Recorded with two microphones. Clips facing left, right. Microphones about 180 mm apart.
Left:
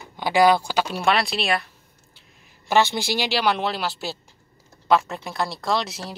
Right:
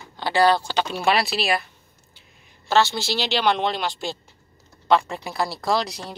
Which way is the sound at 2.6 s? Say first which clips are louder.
Even; 15° left (ahead or behind).